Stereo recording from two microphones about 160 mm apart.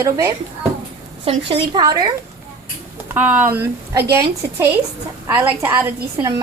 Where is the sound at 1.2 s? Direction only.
35° right (ahead or behind).